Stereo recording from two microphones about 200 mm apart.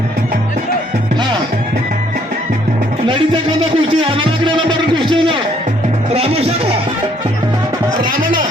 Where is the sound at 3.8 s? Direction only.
25° right (ahead or behind).